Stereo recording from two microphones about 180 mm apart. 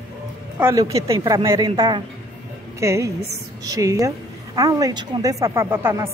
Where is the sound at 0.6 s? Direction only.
15° right (ahead or behind).